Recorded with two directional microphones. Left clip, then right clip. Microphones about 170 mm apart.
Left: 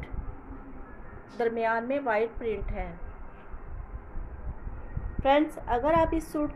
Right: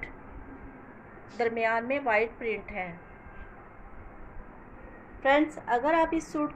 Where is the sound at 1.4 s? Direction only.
15° left (ahead or behind).